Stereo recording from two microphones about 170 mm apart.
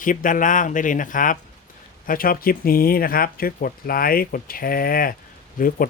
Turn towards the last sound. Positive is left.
turn(degrees=55)  # may be behind; listen again after turning